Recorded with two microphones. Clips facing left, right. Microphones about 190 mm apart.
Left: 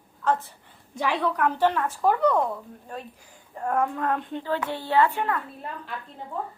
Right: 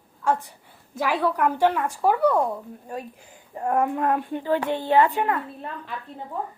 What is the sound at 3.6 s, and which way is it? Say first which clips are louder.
Speech: right 3 dB; 15° right (ahead or behind).